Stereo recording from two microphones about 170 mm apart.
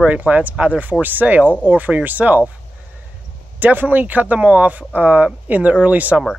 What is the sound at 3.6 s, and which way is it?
Speech, 10° right (ahead or behind).